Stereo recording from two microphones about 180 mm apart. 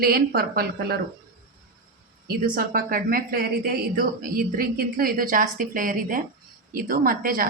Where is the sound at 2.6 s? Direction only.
55° right (ahead or behind).